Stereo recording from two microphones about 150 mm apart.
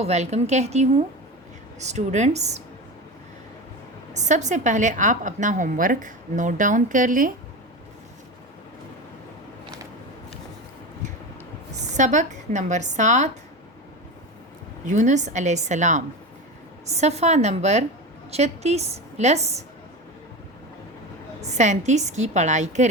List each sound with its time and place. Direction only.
0.0 s a woman's voice: 50° right (ahead or behind)
4.1 s a woman's voice: 50° right (ahead or behind)
11.9 s a woman's voice: 55° right (ahead or behind)
14.8 s a woman's voice: 55° right (ahead or behind)
21.4 s a woman's voice: 50° right (ahead or behind)